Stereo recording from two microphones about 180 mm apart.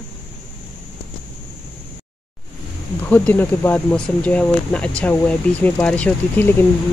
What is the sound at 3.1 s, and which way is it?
Speech, 10° left (ahead or behind).